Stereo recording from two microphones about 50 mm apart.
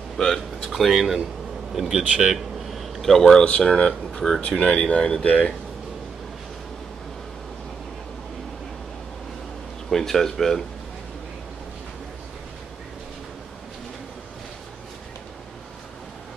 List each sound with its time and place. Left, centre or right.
0.6 s speech: centre
2.7 s a sound: centre
3.4 s speech: left
9.8 s speech: centre